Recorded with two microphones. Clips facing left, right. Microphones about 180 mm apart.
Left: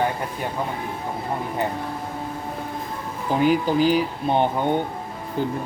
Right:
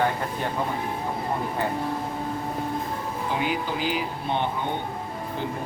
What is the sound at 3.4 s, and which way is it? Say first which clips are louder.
Speech: left 12 dB; 40° left (ahead or behind).